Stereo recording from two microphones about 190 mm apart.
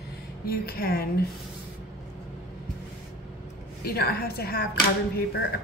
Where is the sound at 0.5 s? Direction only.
50° left (ahead or behind).